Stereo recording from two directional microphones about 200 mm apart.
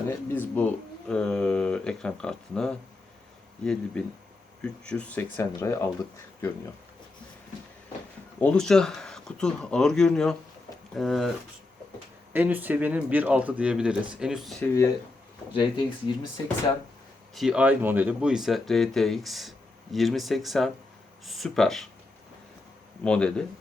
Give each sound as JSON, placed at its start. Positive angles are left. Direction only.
{"t": 0.1, "sound": "speech", "side_deg": 10}
{"t": 8.4, "sound": "speech", "side_deg": 5}
{"t": 12.3, "sound": "speech", "side_deg": -10}
{"t": 15.5, "sound": "speech", "side_deg": 25}
{"t": 17.3, "sound": "speech", "side_deg": 0}
{"t": 23.0, "sound": "speech", "side_deg": 5}